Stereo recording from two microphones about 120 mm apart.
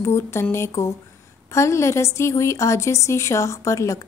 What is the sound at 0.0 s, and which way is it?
A woman's voice, 20° left (ahead or behind).